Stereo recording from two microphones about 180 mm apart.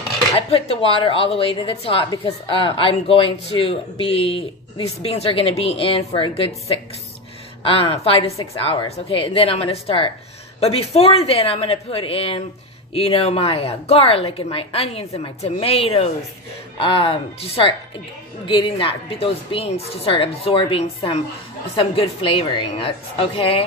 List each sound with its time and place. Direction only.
0.4 s a woman's voice: 35° left (ahead or behind)